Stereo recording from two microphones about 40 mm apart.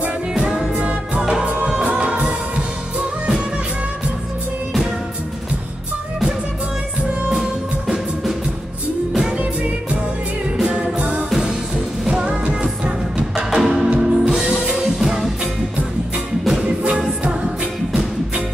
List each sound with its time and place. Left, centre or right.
0.7 s music: right
7.2 s music: centre
10.6 s music: right
13.4 s music: centre
16.4 s music: centre